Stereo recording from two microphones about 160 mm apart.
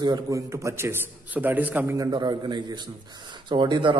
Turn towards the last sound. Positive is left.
turn(degrees=-30)  # may be behind; listen again after turning